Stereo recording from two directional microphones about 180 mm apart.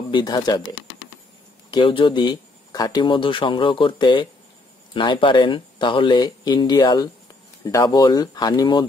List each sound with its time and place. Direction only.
0.1 s speech: 25° left (ahead or behind)
1.7 s speech: 30° left (ahead or behind)